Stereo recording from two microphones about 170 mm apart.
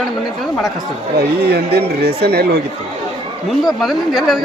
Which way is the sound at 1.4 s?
70° right (ahead or behind).